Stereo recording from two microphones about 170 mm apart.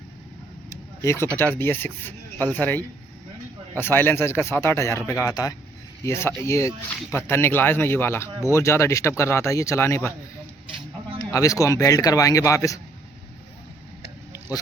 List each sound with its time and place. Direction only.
1.0 s speech: 15° left (ahead or behind)
11.3 s speech: 20° left (ahead or behind)